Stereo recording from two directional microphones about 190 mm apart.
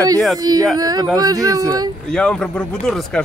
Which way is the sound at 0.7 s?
20° right (ahead or behind).